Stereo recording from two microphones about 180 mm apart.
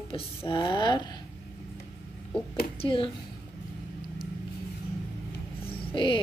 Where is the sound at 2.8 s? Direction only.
30° left (ahead or behind).